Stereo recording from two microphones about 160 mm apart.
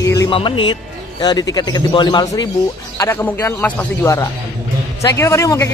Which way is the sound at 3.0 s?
15° left (ahead or behind).